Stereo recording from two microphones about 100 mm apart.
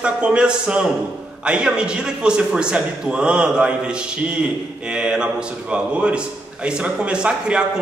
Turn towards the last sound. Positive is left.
turn(degrees=-10)  # may be behind; listen again after turning